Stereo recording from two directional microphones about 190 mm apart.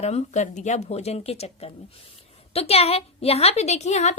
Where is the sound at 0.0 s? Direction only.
35° left (ahead or behind).